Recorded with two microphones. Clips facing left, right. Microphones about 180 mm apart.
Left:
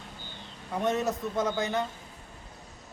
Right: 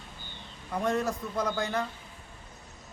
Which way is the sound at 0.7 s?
20° left (ahead or behind).